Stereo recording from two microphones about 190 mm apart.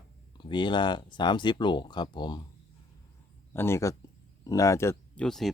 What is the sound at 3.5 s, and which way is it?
Speech, 15° left (ahead or behind).